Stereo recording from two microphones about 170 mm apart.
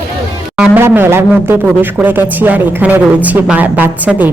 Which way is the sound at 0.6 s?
10° right (ahead or behind).